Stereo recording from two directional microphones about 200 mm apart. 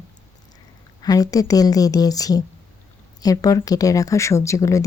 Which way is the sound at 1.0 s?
20° left (ahead or behind).